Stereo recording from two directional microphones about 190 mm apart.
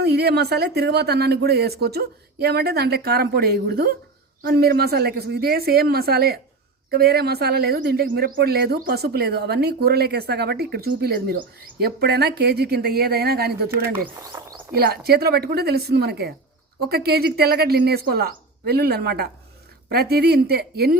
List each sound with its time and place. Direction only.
0.0 s speech: 60° right (ahead or behind)
14.7 s speech: 55° right (ahead or behind)